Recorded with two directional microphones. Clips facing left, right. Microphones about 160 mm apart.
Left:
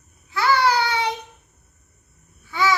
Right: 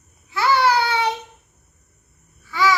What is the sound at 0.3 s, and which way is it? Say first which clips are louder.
Child singing: right 1 dB; 25° right (ahead or behind).